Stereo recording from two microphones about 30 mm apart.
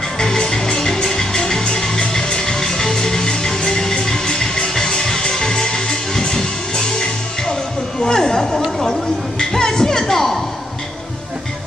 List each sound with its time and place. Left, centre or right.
0.2 s music: centre
8.0 s a sound: left
8.4 s chatter: centre
8.7 s music: centre